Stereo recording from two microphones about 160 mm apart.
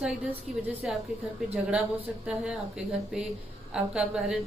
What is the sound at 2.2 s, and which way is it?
Speech, 5° right (ahead or behind).